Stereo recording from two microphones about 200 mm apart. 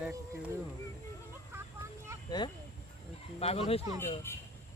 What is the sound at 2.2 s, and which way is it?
Speech, 20° left (ahead or behind).